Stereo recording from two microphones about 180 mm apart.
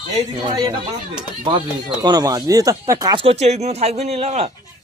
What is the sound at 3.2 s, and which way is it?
Speech, 35° right (ahead or behind).